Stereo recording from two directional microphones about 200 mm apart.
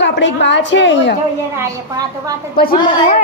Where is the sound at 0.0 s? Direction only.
60° left (ahead or behind).